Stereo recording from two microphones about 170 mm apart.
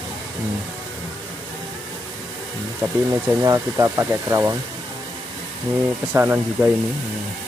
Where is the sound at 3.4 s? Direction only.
20° right (ahead or behind).